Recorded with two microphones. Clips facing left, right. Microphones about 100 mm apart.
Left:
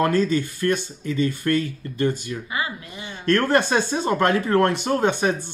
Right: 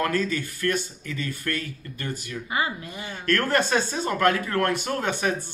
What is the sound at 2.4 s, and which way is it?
Speech, 35° right (ahead or behind).